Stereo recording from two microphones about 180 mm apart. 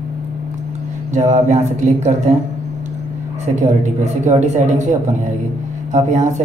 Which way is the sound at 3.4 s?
40° right (ahead or behind).